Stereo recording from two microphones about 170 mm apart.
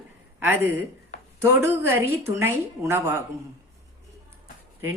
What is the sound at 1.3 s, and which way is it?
Speech, 10° right (ahead or behind).